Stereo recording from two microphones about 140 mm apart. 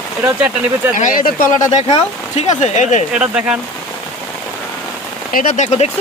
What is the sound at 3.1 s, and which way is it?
Speech, 5° right (ahead or behind).